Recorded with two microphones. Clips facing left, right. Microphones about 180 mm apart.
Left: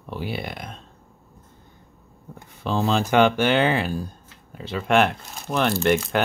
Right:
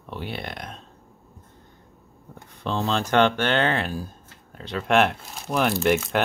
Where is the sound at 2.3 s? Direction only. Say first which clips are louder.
Left 3 dB; 5° left (ahead or behind).